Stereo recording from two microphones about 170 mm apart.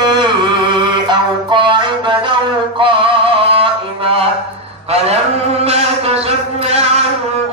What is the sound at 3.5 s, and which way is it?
Music, 35° right (ahead or behind).